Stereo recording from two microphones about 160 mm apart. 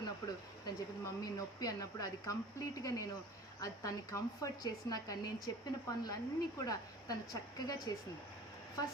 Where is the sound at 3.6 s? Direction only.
20° left (ahead or behind).